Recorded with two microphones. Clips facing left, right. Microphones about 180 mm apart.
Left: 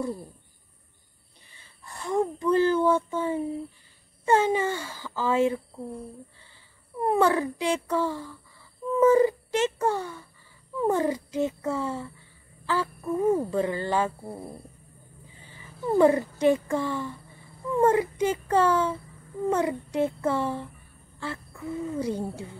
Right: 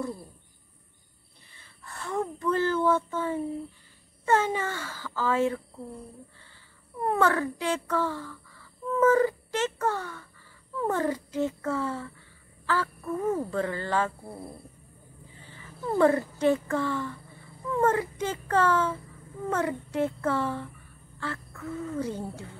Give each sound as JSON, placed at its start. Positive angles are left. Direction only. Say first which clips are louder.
{"t": 1.6, "sound": "speech", "louder": "left 1 dB", "side_deg": 15}
{"t": 7.0, "sound": "speech", "louder": "left 2 dB", "side_deg": 15}
{"t": 15.5, "sound": "speech", "louder": "left 4 dB", "side_deg": 15}